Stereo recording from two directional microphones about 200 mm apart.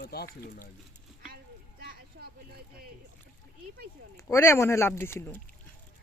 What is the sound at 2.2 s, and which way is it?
Speech, 60° right (ahead or behind).